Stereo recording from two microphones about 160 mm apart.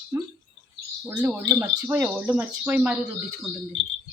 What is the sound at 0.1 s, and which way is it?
Speech, 20° right (ahead or behind).